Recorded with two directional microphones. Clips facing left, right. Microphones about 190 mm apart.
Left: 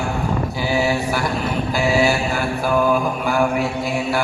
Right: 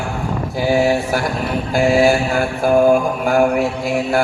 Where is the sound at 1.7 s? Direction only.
50° right (ahead or behind).